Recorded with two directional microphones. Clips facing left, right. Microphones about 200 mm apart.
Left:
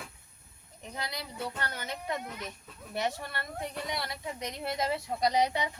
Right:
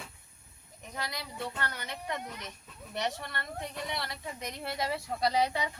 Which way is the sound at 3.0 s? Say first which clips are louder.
Left 1 dB; 10° left (ahead or behind).